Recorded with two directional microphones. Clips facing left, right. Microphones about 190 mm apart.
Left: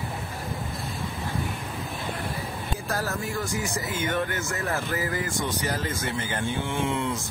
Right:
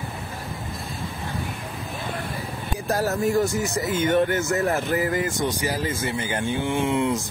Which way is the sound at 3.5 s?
25° right (ahead or behind).